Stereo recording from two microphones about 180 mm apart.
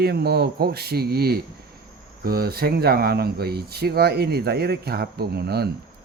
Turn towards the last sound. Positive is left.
turn(degrees=-60)  # may be behind; listen again after turning